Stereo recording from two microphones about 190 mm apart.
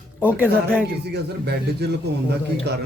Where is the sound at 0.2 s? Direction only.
10° right (ahead or behind).